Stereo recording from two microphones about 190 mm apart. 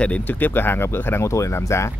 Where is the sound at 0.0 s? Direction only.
10° left (ahead or behind).